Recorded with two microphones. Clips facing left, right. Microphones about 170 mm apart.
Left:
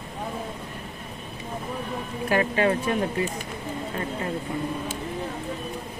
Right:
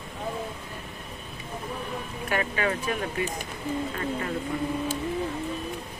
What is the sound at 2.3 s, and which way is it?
Speech, 30° left (ahead or behind).